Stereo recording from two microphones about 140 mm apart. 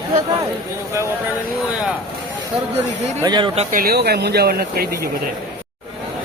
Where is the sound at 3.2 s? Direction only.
30° right (ahead or behind).